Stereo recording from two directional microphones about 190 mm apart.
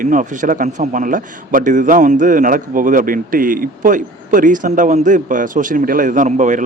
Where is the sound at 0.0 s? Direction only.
45° right (ahead or behind).